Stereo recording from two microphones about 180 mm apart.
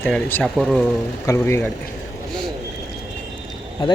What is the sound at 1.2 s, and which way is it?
Speech, 15° left (ahead or behind).